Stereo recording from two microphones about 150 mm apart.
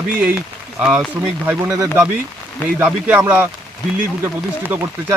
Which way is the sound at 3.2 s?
15° right (ahead or behind).